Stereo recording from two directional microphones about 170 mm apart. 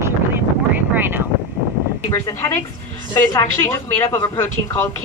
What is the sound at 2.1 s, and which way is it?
A woman's voice, 20° left (ahead or behind).